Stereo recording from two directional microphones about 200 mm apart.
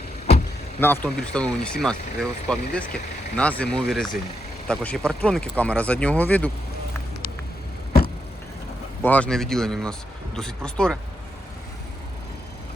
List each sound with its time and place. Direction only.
0.8 s speech: 10° left (ahead or behind)
9.0 s speech: 5° left (ahead or behind)